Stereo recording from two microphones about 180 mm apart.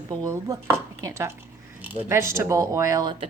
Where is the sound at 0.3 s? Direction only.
15° right (ahead or behind).